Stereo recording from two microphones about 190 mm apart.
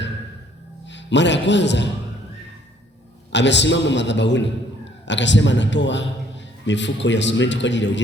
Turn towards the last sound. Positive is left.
turn(degrees=70)  # may be behind; listen again after turning